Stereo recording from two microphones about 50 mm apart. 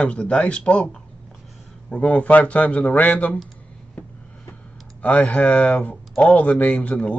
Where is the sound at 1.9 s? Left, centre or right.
Left.